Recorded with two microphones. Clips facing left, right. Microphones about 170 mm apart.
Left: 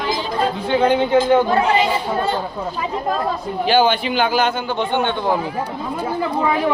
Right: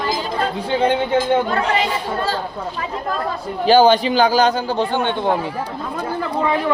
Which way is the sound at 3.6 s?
40° right (ahead or behind).